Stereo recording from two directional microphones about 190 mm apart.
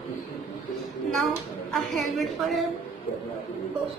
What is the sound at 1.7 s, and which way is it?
Speech, centre (ahead or behind).